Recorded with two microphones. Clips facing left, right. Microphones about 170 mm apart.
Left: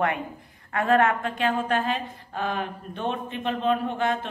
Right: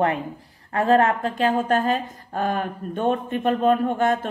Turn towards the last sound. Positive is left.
turn(degrees=-45)  # may be behind; listen again after turning